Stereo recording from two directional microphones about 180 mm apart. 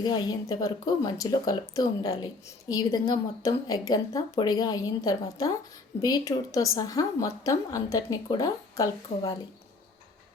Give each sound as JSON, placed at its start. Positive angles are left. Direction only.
{"t": 0.0, "sound": "speech", "side_deg": 25}